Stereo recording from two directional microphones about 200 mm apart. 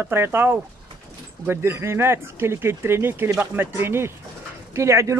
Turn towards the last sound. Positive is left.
turn(degrees=-15)  # may be behind; listen again after turning